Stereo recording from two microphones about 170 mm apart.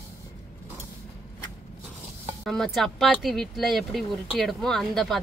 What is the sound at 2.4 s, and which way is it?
Speech, centre (ahead or behind).